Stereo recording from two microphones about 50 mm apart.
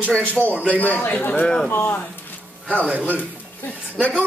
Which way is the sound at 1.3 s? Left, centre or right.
Left.